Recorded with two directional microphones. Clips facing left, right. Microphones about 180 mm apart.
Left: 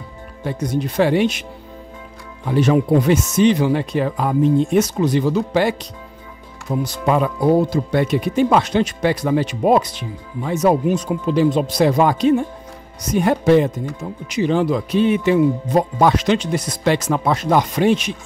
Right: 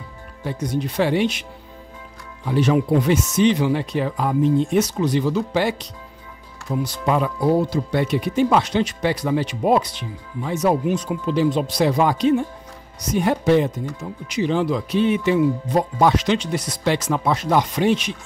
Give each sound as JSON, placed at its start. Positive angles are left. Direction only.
{"t": 0.4, "sound": "speech", "side_deg": 50}
{"t": 2.4, "sound": "speech", "side_deg": 50}